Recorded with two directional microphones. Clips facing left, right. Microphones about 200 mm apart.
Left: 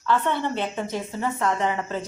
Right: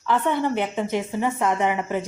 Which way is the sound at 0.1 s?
10° right (ahead or behind).